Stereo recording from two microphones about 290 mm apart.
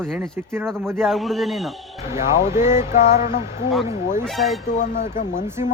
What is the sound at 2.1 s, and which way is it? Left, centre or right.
Speech, left.